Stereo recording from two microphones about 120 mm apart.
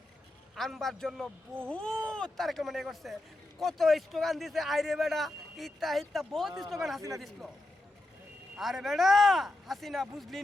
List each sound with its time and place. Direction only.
0.5 s a man's voice: centre (ahead or behind)
8.5 s a man's voice: centre (ahead or behind)